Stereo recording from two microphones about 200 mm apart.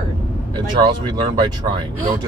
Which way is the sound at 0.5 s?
20° right (ahead or behind).